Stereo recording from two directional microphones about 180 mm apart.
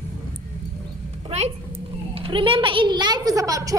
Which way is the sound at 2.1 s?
30° right (ahead or behind).